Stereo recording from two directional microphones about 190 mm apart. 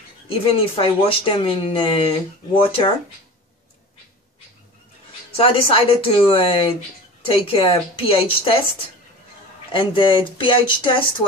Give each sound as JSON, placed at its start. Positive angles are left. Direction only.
{"t": 0.3, "sound": "speech", "side_deg": 30}
{"t": 5.3, "sound": "speech", "side_deg": 30}
{"t": 9.7, "sound": "speech", "side_deg": 25}